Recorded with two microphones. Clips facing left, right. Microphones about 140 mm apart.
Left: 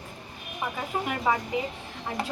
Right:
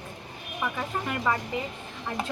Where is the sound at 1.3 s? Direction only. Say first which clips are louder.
Left 2 dB; 15° left (ahead or behind).